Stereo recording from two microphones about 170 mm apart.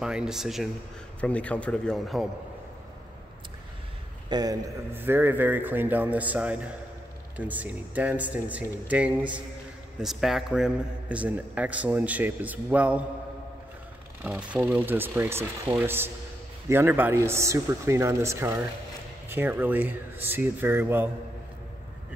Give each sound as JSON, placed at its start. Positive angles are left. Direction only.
{"t": 0.0, "sound": "a man's voice", "side_deg": -5}
{"t": 4.3, "sound": "a man's voice", "side_deg": -25}
{"t": 4.9, "sound": "a man's voice", "side_deg": -10}
{"t": 14.2, "sound": "a man's voice", "side_deg": -5}